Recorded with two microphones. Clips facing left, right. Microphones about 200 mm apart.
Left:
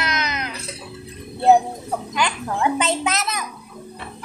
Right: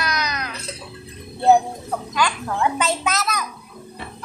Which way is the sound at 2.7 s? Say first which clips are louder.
Left 1 dB; 20° left (ahead or behind).